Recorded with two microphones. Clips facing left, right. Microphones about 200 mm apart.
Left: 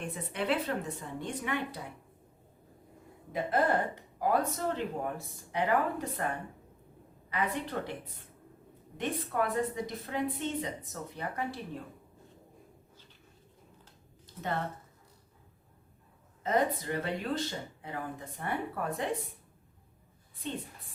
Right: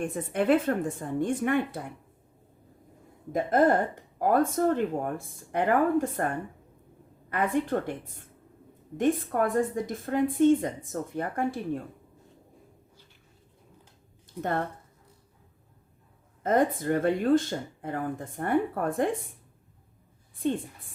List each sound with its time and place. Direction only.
0.0 s speech: 50° right (ahead or behind)
3.3 s speech: 45° right (ahead or behind)
16.4 s speech: 50° right (ahead or behind)